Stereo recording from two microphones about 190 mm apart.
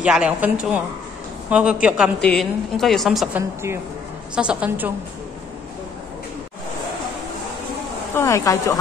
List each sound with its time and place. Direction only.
0.0 s a woman's voice: 5° right (ahead or behind)
8.1 s a woman's voice: 15° left (ahead or behind)